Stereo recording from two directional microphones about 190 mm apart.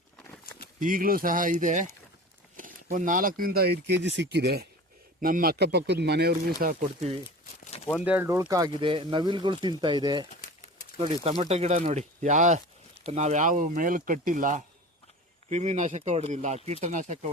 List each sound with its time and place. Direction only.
0.8 s speech: 45° right (ahead or behind)
5.2 s speech: 50° right (ahead or behind)
7.6 s a sound: 35° left (ahead or behind)
8.0 s speech: 10° right (ahead or behind); by 17.2 s 40° right (ahead or behind)